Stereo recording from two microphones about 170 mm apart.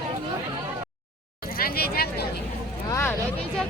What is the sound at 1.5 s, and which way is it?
Speech, 60° left (ahead or behind).